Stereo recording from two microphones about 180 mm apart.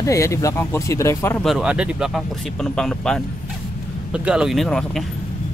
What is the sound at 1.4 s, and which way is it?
Speech, centre (ahead or behind).